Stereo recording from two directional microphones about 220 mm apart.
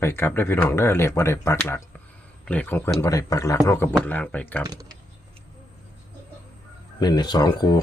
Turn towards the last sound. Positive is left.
turn(degrees=20)  # may be behind; listen again after turning